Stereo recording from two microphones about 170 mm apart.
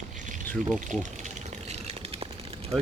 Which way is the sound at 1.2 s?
45° right (ahead or behind).